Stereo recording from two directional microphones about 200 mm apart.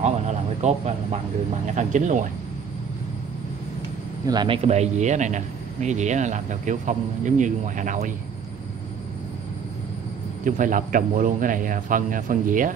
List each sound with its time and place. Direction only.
0.0 s a man's voice: 35° right (ahead or behind)
4.3 s a man's voice: 25° right (ahead or behind); by 8.1 s 40° right (ahead or behind)
10.4 s a man's voice: 40° right (ahead or behind)